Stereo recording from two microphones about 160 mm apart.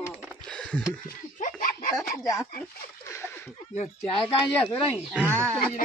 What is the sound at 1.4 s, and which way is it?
Laughter, 60° left (ahead or behind).